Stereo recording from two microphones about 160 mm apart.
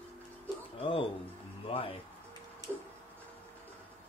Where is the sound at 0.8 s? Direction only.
35° left (ahead or behind).